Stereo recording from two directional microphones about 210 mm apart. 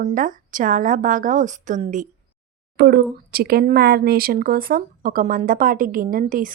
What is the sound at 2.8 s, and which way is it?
Speech, 50° right (ahead or behind).